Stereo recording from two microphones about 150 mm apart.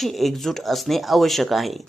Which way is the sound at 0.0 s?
Centre (ahead or behind).